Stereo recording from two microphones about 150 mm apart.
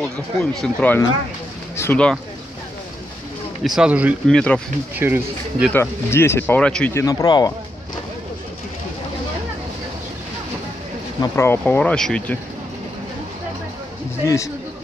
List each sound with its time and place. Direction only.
0.0 s speech: 5° left (ahead or behind)
3.6 s speech: 5° right (ahead or behind)
4.3 s speech: 5° left (ahead or behind)
4.9 s speech: 15° right (ahead or behind)
5.7 s speech: 15° left (ahead or behind)
6.9 s speech: 20° left (ahead or behind)
11.1 s speech: 15° left (ahead or behind)
14.2 s speech: 20° left (ahead or behind)